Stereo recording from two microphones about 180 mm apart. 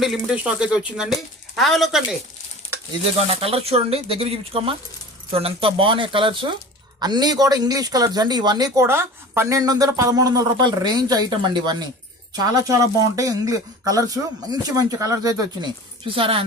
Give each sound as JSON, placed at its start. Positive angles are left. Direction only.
{"t": 0.0, "sound": "speech", "side_deg": 0}
{"t": 3.4, "sound": "speech", "side_deg": -35}